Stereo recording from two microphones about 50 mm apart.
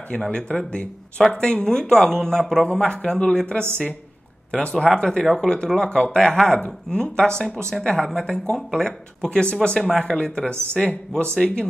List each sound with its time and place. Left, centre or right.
0.2 s speech: centre
6.0 s speech: centre